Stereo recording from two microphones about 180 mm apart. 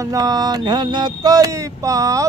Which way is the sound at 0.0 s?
20° right (ahead or behind).